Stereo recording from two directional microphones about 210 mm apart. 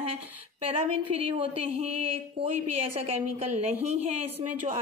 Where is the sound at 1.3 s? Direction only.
25° right (ahead or behind).